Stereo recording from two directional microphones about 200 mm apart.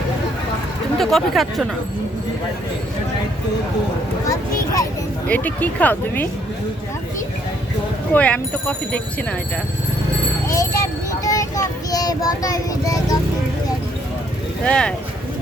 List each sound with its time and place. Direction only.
0.9 s speech: centre (ahead or behind)
4.3 s a sound: 15° left (ahead or behind)
5.3 s speech: 10° left (ahead or behind)
8.1 s speech: 5° left (ahead or behind)
10.5 s speech: 15° left (ahead or behind)
14.6 s speech: 5° left (ahead or behind)